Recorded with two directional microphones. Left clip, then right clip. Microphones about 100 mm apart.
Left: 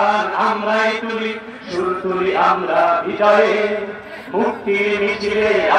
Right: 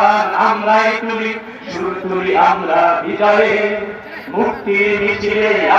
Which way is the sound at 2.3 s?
30° left (ahead or behind).